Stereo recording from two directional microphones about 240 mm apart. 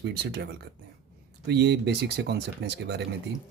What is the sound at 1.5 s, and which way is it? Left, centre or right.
Speech, right.